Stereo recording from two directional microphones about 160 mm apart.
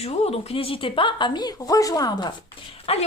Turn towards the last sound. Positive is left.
turn(degrees=40)  # may be behind; listen again after turning